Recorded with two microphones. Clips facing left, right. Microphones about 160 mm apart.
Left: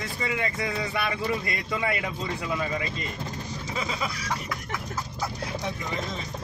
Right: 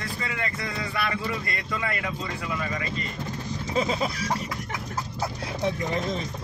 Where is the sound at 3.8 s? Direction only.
30° right (ahead or behind).